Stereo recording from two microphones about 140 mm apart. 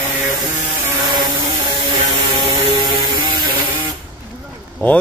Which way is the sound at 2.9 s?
35° right (ahead or behind).